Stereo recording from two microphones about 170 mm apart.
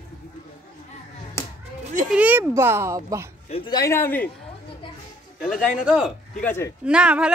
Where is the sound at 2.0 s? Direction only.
10° right (ahead or behind).